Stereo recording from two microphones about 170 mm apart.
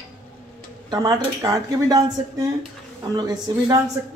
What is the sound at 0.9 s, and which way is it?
Speech, 20° right (ahead or behind).